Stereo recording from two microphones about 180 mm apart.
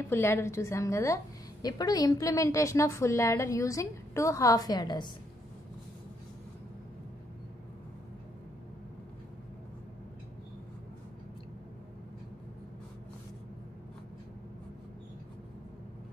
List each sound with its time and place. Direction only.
0.1 s a woman's voice: 15° left (ahead or behind)